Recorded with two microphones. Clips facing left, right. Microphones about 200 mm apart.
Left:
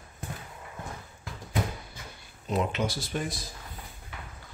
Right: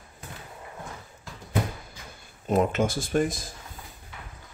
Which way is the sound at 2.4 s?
50° right (ahead or behind).